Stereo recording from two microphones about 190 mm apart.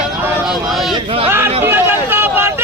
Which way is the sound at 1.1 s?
30° right (ahead or behind).